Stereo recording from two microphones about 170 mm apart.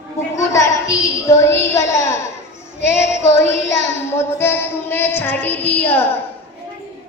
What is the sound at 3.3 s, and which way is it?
Child singing, 15° left (ahead or behind).